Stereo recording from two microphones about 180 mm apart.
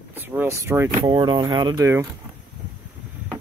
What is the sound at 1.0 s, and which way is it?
Speech, 25° right (ahead or behind).